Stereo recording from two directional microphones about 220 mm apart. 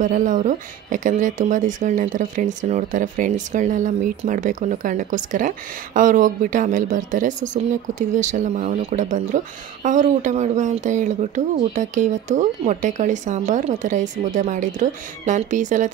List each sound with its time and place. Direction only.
0.0 s speech: 35° right (ahead or behind)